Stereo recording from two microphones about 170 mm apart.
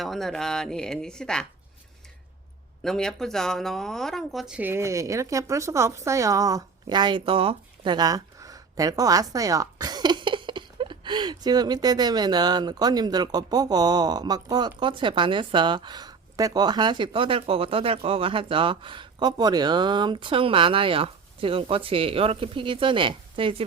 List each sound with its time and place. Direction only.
0.0 s speech: centre (ahead or behind)
2.8 s speech: 5° left (ahead or behind); by 23.6 s 30° right (ahead or behind)